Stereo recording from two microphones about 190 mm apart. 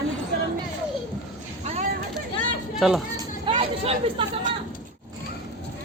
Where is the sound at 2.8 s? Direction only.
Centre (ahead or behind).